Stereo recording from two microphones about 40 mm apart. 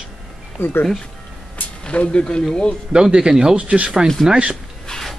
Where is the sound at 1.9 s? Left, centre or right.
Left.